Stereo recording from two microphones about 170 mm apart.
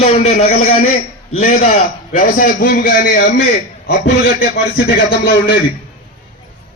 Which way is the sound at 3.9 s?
65° left (ahead or behind).